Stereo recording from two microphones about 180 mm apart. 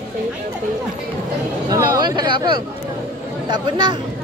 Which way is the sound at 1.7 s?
20° right (ahead or behind).